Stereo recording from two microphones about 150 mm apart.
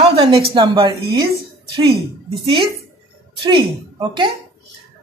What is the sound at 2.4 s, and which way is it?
Speech, 35° right (ahead or behind).